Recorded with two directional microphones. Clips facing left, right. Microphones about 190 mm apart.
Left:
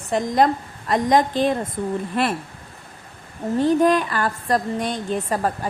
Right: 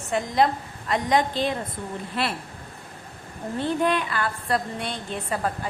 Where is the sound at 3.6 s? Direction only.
40° left (ahead or behind).